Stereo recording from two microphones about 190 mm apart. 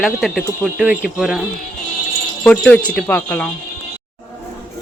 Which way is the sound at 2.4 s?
5° left (ahead or behind).